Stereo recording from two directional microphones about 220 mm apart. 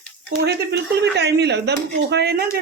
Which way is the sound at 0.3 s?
50° right (ahead or behind).